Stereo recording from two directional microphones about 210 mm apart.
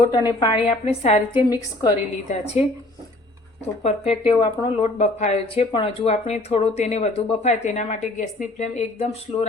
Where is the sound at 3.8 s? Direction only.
30° left (ahead or behind).